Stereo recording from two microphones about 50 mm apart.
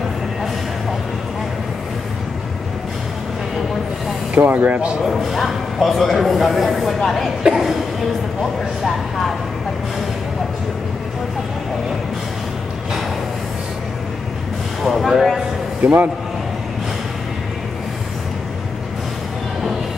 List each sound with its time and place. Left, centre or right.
4.4 s speech: right
5.0 s speech: centre
14.8 s speech: centre
15.8 s a man's voice: right